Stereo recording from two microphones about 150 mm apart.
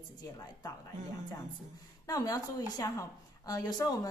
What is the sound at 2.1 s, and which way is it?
A woman's voice, 25° left (ahead or behind).